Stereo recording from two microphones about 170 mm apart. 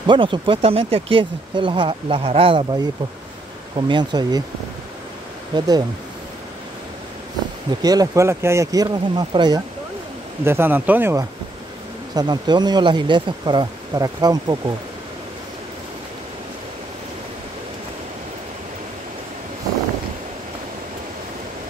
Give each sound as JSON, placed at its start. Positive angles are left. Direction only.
{"t": 0.0, "sound": "speech", "side_deg": -30}
{"t": 5.5, "sound": "speech", "side_deg": -30}
{"t": 7.8, "sound": "speech", "side_deg": -20}
{"t": 10.4, "sound": "speech", "side_deg": -15}
{"t": 12.1, "sound": "speech", "side_deg": -25}